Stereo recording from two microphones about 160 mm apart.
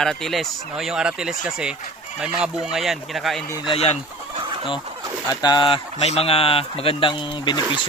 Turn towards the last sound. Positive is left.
turn(degrees=30)  # may be behind; listen again after turning